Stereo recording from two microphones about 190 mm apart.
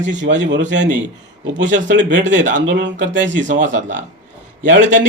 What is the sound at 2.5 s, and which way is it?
Speech, 70° right (ahead or behind).